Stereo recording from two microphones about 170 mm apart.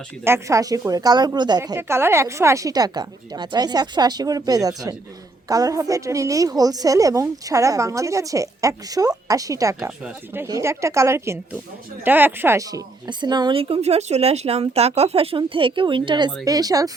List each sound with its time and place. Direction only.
0.3 s a woman's voice: 15° right (ahead or behind)